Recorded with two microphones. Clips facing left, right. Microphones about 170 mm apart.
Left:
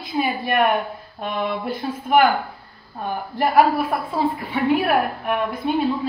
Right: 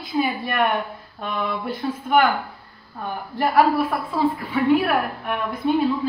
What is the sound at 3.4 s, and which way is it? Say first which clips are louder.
A woman's voice: left 1 dB; 20° left (ahead or behind).